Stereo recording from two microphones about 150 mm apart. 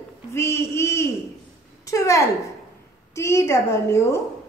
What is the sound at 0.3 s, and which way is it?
A woman's voice, 20° left (ahead or behind).